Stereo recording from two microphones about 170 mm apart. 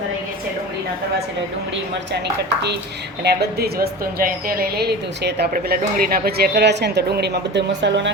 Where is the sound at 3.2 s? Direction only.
70° right (ahead or behind); by 8.1 s 90° right.